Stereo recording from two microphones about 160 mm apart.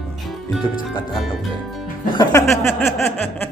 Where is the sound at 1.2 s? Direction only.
Centre (ahead or behind).